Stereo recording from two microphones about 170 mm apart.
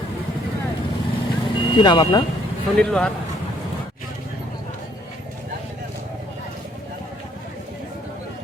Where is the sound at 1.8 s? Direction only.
30° left (ahead or behind).